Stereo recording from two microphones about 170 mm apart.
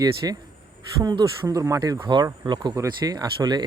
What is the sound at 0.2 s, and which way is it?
Speech, 20° right (ahead or behind).